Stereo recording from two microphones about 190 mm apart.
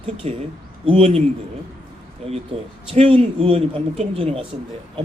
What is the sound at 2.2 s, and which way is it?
A woman's voice, 30° right (ahead or behind).